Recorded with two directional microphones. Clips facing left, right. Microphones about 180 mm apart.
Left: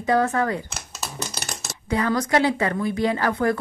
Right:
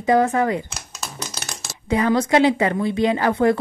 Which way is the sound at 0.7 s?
5° left (ahead or behind).